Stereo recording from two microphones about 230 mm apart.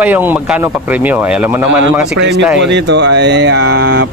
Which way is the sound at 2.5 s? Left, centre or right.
Right.